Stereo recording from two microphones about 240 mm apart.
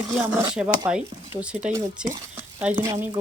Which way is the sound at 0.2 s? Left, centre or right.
Centre.